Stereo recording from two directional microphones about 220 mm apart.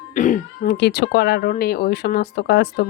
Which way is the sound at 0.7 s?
50° left (ahead or behind).